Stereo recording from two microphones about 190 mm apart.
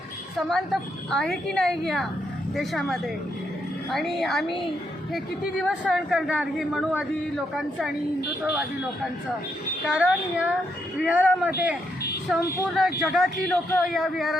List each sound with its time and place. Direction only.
0.3 s a woman's voice: centre (ahead or behind)
9.9 s a woman's voice: 5° right (ahead or behind)
12.4 s speech: 15° left (ahead or behind)
12.7 s a woman's voice: centre (ahead or behind)